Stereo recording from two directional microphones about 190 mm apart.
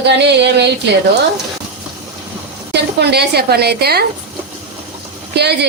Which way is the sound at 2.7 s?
60° right (ahead or behind).